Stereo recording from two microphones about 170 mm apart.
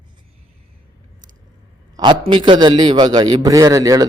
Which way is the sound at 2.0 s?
30° right (ahead or behind).